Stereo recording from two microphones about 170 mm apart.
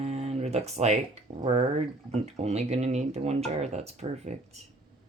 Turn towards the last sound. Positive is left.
turn(degrees=-40)  # may be behind; listen again after turning